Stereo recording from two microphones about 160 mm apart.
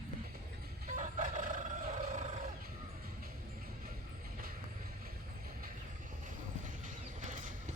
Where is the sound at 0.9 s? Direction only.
55° right (ahead or behind).